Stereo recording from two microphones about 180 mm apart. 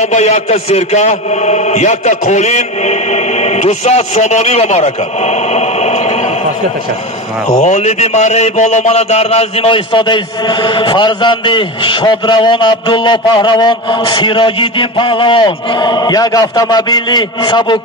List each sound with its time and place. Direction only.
0.0 s a man's voice: 40° left (ahead or behind)
7.6 s speech: 40° left (ahead or behind)